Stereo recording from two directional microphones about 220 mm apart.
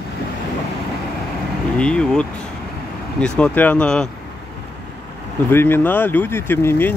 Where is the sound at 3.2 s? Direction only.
5° left (ahead or behind).